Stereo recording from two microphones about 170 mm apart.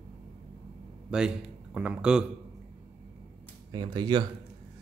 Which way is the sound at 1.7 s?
5° right (ahead or behind).